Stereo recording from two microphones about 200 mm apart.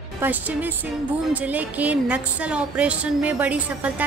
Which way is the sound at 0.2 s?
10° right (ahead or behind).